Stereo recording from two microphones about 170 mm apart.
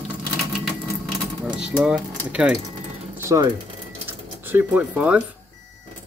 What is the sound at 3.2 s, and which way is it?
Music, 15° right (ahead or behind).